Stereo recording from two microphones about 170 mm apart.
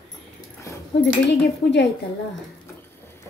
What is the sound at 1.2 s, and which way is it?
Speech, 80° left.